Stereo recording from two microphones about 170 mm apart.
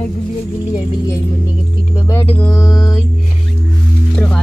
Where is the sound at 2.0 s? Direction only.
15° left (ahead or behind).